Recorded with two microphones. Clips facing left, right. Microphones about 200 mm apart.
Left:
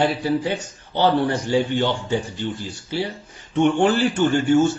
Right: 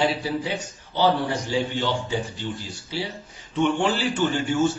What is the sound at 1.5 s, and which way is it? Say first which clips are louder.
Speech: left 4 dB; 55° left (ahead or behind).